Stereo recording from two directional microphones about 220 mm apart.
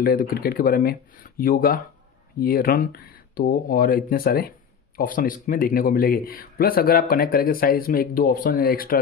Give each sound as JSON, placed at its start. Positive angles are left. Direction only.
{"t": 0.0, "sound": "speech", "side_deg": 40}